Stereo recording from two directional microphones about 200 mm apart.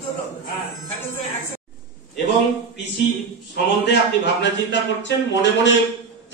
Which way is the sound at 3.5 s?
60° left (ahead or behind).